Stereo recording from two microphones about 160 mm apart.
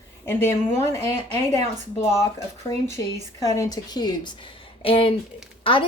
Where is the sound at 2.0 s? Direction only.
15° left (ahead or behind).